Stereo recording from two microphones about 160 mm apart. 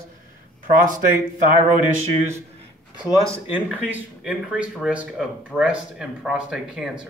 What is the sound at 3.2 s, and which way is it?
Speech, 10° right (ahead or behind).